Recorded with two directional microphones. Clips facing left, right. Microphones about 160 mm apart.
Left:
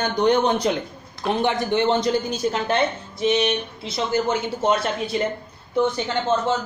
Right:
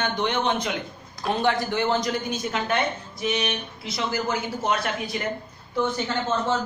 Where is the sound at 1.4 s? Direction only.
20° left (ahead or behind).